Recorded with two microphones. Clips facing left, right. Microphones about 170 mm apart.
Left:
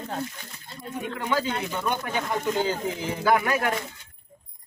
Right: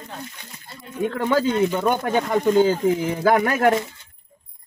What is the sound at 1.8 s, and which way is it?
Speech, 45° right (ahead or behind).